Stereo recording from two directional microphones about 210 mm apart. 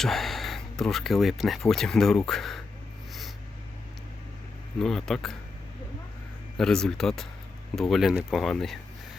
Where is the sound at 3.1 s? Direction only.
Centre (ahead or behind).